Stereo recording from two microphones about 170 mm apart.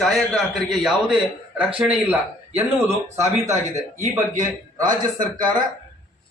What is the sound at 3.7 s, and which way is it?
A man's voice, 45° right (ahead or behind).